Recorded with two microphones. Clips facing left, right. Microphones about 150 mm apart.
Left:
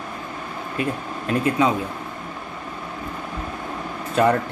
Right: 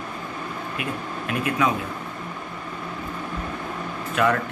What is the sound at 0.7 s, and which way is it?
Speech, 30° left (ahead or behind).